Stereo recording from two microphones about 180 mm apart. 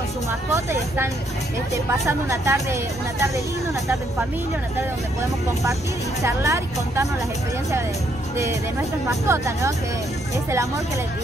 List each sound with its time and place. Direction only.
0.5 s speech: 15° right (ahead or behind)
6.2 s speech: 15° right (ahead or behind)
9.3 s speech: 15° right (ahead or behind)